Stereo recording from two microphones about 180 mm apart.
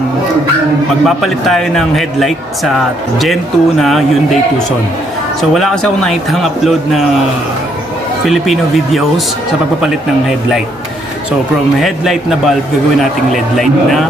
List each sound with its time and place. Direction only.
1.0 s a man's voice: centre (ahead or behind)
5.4 s a man's voice: centre (ahead or behind)
8.3 s a man's voice: centre (ahead or behind)
11.8 s a man's voice: centre (ahead or behind)